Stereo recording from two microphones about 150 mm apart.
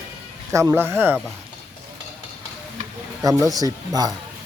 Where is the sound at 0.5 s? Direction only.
20° right (ahead or behind).